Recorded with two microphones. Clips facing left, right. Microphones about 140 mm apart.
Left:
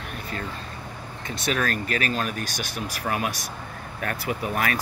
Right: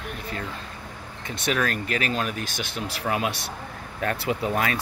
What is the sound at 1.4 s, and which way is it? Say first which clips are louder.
Speech: right 1 dB; 20° right (ahead or behind).